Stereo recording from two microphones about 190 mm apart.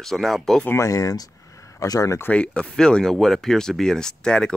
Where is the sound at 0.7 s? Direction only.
15° left (ahead or behind).